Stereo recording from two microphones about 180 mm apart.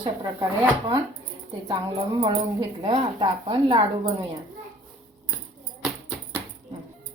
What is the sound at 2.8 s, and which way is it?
Speech, 30° right (ahead or behind).